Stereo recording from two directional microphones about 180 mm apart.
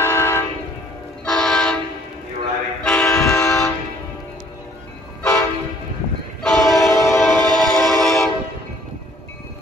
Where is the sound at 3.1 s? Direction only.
15° left (ahead or behind).